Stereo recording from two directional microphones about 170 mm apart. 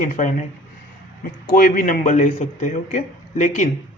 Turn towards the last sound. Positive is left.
turn(degrees=45)  # may be behind; listen again after turning